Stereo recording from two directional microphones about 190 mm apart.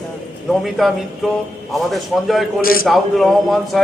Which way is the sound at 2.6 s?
50° left (ahead or behind).